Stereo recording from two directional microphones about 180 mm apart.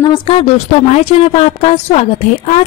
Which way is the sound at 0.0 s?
30° left (ahead or behind).